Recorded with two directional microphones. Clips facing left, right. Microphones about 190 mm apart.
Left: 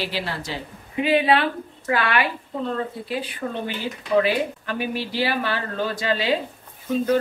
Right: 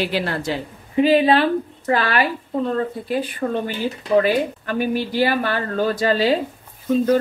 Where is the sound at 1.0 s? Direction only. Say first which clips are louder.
Right 4 dB; 35° right (ahead or behind).